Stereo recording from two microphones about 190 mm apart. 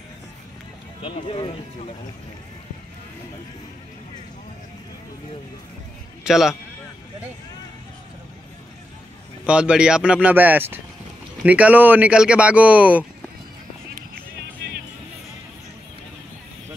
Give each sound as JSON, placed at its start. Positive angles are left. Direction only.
{"t": 1.0, "sound": "speech", "side_deg": 30}
{"t": 6.2, "sound": "a man's voice", "side_deg": 0}
{"t": 9.5, "sound": "speech", "side_deg": -5}